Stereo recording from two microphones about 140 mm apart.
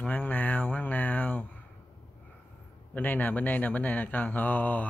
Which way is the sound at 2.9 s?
10° left (ahead or behind).